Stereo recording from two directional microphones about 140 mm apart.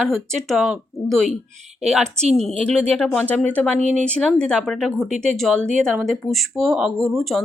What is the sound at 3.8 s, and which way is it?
Speech, 60° right (ahead or behind).